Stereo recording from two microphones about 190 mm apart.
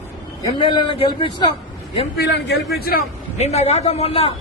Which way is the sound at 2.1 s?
60° left (ahead or behind).